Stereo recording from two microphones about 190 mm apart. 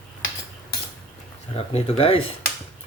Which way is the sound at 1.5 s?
35° left (ahead or behind).